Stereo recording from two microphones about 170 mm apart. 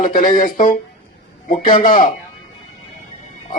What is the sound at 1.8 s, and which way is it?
Speech, 50° left (ahead or behind).